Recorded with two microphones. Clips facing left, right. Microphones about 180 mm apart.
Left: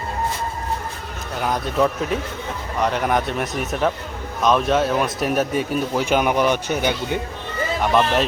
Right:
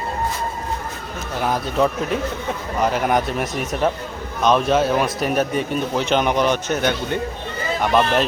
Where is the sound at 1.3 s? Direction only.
5° right (ahead or behind).